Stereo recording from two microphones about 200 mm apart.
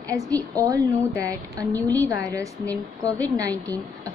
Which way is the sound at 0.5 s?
15° right (ahead or behind).